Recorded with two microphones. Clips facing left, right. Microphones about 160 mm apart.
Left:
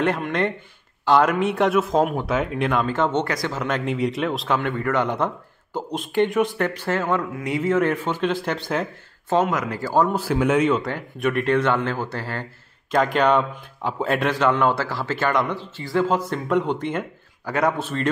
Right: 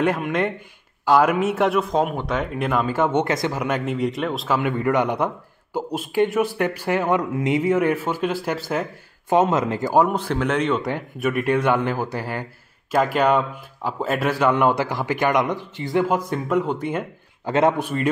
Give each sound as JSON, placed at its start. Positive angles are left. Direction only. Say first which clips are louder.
{"t": 0.0, "sound": "a man's voice", "louder": "right 1 dB", "side_deg": -5}
{"t": 2.7, "sound": "a man's voice", "louder": "right 3 dB", "side_deg": -10}
{"t": 4.6, "sound": "a man's voice", "louder": "right 6 dB", "side_deg": -15}
{"t": 9.3, "sound": "speech", "louder": "right 3 dB", "side_deg": -20}
{"t": 10.1, "sound": "speech", "louder": "left 2 dB", "side_deg": 5}
{"t": 10.8, "sound": "a man's voice", "louder": "right 1 dB", "side_deg": -15}
{"t": 17.5, "sound": "speech", "louder": "right 3 dB", "side_deg": -25}
{"t": 17.8, "sound": "a man's voice", "louder": "right 1 dB", "side_deg": -10}